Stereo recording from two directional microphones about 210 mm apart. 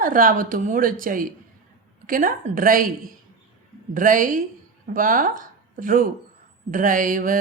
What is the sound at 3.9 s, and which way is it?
A woman's voice, 40° right (ahead or behind).